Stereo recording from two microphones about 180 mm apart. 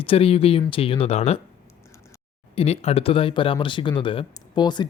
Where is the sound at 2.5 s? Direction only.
35° left (ahead or behind).